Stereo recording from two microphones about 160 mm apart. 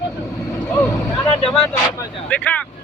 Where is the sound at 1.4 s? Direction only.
5° left (ahead or behind).